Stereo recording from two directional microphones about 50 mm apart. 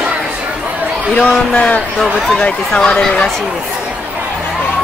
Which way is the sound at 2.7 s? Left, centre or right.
Centre.